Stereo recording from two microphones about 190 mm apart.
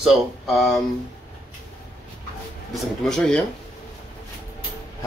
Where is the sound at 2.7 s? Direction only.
Centre (ahead or behind).